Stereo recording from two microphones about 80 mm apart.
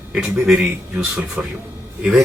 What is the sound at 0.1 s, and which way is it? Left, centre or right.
Speech, centre.